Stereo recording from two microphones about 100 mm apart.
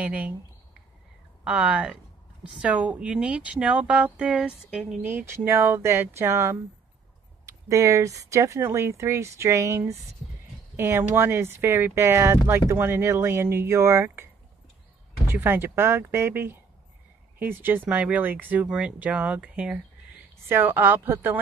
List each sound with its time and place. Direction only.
0.0 s speech: 15° right (ahead or behind)
1.4 s speech: 10° right (ahead or behind)
5.0 s speech: 25° right (ahead or behind)